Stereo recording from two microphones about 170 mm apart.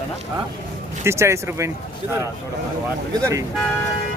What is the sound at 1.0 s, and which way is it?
Speech, 15° right (ahead or behind).